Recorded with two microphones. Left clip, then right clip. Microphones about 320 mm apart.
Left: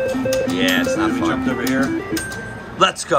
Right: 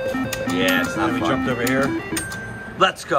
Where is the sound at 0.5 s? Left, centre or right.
Centre.